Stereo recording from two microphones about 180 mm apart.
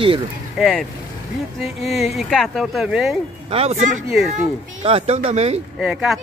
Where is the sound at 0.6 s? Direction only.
Centre (ahead or behind).